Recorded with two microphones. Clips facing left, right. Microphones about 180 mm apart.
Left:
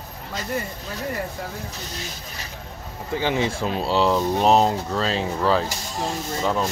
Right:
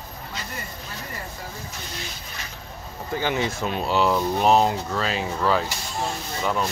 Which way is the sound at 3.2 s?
30° left (ahead or behind).